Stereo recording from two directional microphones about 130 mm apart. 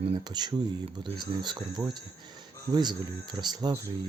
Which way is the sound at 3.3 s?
35° right (ahead or behind).